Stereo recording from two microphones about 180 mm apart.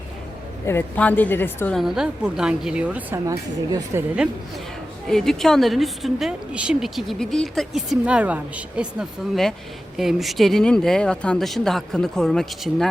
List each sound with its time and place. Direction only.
0.6 s a woman's voice: 10° left (ahead or behind)
1.8 s a woman's voice: 5° right (ahead or behind)
3.2 s speech: 20° right (ahead or behind)
5.0 s a woman's voice: centre (ahead or behind)